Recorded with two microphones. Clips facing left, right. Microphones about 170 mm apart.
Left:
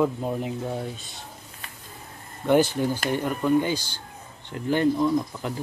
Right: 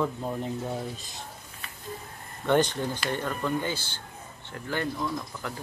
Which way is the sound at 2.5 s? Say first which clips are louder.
Left 4 dB; 5° left (ahead or behind).